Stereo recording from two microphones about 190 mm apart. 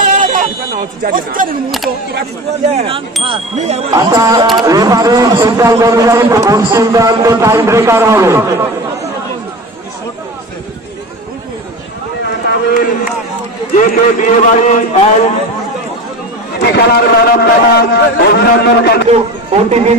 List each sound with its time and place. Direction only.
0.1 s a sound: 45° right (ahead or behind)
2.7 s speech: 30° right (ahead or behind)
3.9 s a man's voice: 20° right (ahead or behind)
12.4 s run: 55° left (ahead or behind)
13.7 s a man's voice: 45° left (ahead or behind)
16.7 s a man's voice: 55° left (ahead or behind)
19.0 s a man's voice: 35° right (ahead or behind)